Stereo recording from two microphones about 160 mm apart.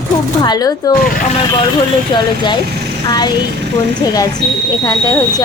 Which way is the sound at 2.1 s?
30° left (ahead or behind).